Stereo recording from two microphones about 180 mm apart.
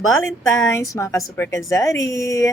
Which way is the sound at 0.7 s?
15° left (ahead or behind).